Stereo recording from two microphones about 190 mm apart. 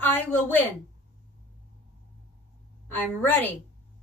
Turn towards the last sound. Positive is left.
turn(degrees=10)  # may be behind; listen again after turning